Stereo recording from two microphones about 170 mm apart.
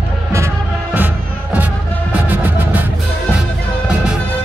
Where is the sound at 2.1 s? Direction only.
10° right (ahead or behind).